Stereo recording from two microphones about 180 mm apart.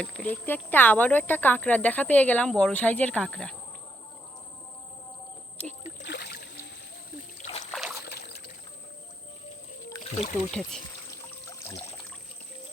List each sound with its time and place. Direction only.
0.0 s speech: 5° left (ahead or behind)
6.0 s rowboat: 70° left (ahead or behind)
7.7 s a sound: centre (ahead or behind)
8.0 s trickle: 60° left (ahead or behind)
10.6 s speech: centre (ahead or behind)
11.4 s pour: 15° left (ahead or behind)